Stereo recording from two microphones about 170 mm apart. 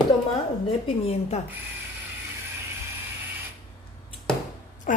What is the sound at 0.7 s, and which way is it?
Speech, 35° left (ahead or behind).